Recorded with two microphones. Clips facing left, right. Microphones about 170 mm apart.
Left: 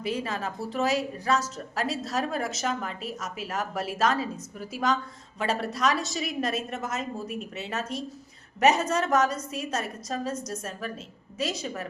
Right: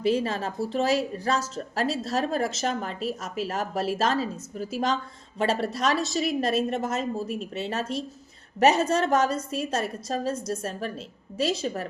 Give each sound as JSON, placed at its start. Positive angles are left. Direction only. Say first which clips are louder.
{"t": 0.0, "sound": "a woman's voice", "louder": "right 6 dB", "side_deg": -30}